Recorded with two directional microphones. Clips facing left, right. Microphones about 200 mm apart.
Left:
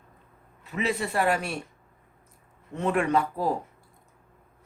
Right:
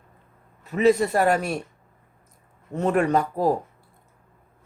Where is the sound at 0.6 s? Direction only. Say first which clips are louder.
Right 10 dB; 40° right (ahead or behind).